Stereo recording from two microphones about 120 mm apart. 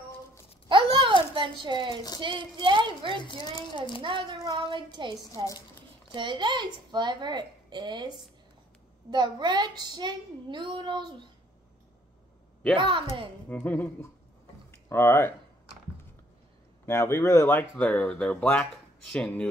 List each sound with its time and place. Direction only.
0.7 s a sound: 45° right (ahead or behind)
2.2 s a woman's voice: 40° right (ahead or behind)
3.2 s speech: 40° left (ahead or behind)
4.0 s a woman's voice: 45° right (ahead or behind)
9.1 s a woman's voice: 40° right (ahead or behind)
12.7 s a woman's voice: 45° right (ahead or behind)
13.5 s speech: 15° left (ahead or behind)
16.8 s speech: 20° left (ahead or behind)